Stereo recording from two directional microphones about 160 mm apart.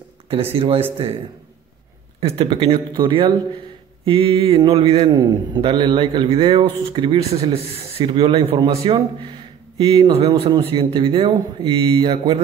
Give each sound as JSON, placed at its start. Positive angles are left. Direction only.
{"t": 0.6, "sound": "a man's voice", "side_deg": -35}
{"t": 2.1, "sound": "a man's voice", "side_deg": -35}